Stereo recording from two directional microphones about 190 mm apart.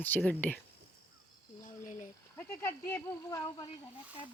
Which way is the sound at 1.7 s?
45° left (ahead or behind).